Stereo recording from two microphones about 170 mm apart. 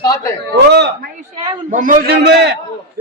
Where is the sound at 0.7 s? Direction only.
80° right.